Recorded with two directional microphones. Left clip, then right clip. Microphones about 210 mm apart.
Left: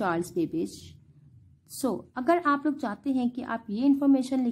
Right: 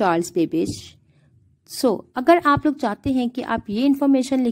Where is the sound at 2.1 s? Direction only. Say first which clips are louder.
Right 8 dB; 30° right (ahead or behind).